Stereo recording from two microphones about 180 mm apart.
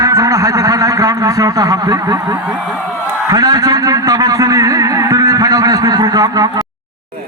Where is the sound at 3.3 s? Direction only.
20° right (ahead or behind).